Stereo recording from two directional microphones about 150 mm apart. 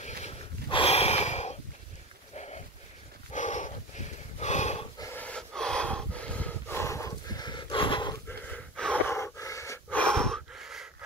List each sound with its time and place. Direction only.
0.0 s snort: 50° left (ahead or behind)
0.7 s gasp: 45° left (ahead or behind)
2.3 s a sound: 45° left (ahead or behind)
3.3 s dog: 55° left (ahead or behind)
4.4 s a sound: 50° left (ahead or behind)
5.1 s snort: 10° left (ahead or behind); by 8.2 s 30° left (ahead or behind)
8.3 s gasp: 5° left (ahead or behind)
9.9 s gasp: 5° left (ahead or behind)
10.5 s a sound: centre (ahead or behind)